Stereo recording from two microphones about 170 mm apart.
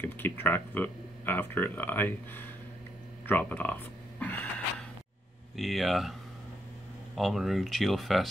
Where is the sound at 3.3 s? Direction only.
10° left (ahead or behind).